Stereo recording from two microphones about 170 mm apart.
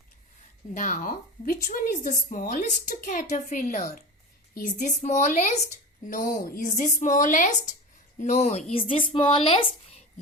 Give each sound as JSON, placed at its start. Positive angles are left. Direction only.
{"t": 0.7, "sound": "a woman's voice", "side_deg": 50}